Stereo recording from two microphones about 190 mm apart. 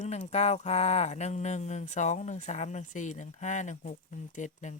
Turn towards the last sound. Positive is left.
turn(degrees=40)  # may be behind; listen again after turning